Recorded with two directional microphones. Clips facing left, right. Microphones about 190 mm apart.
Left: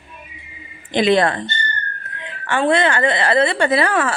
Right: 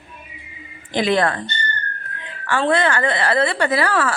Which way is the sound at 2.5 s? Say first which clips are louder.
Left 2 dB; 20° left (ahead or behind).